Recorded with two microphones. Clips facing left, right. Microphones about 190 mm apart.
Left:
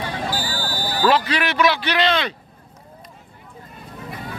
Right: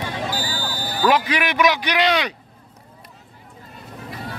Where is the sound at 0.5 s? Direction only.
40° left (ahead or behind).